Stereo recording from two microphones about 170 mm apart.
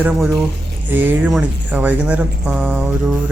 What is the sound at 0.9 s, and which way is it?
Speech, 10° right (ahead or behind).